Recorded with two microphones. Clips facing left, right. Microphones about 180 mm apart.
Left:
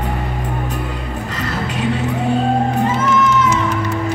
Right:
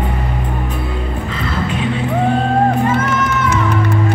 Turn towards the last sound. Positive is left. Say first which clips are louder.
# left 1 dB
turn(degrees=-60)  # may be behind; listen again after turning